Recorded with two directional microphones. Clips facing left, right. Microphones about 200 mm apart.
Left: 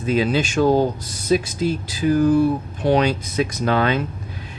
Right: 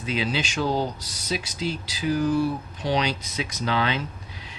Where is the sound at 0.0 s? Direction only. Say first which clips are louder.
Left 8 dB; 50° left (ahead or behind).